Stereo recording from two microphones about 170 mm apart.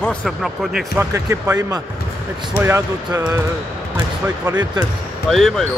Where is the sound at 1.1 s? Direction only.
15° right (ahead or behind).